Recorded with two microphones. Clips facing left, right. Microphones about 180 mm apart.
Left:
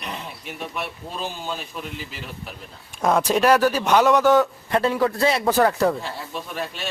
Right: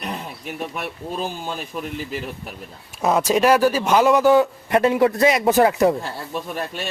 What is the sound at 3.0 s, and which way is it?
A man's voice, 5° right (ahead or behind).